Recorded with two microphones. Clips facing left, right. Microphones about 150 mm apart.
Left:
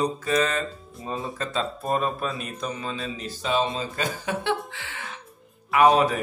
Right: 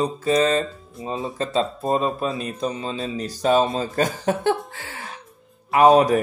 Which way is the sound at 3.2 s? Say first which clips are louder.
Right 7 dB; 40° right (ahead or behind).